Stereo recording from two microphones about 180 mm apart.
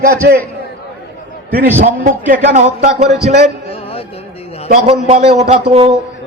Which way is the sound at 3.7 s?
30° left (ahead or behind).